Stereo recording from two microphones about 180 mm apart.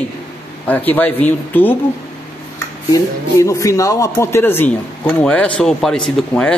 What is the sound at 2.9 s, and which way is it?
Speech, 15° left (ahead or behind).